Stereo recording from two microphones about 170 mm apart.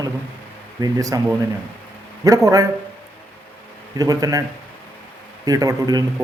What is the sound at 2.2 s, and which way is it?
Speech, 20° right (ahead or behind).